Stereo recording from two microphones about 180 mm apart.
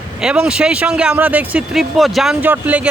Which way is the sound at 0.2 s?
5° right (ahead or behind).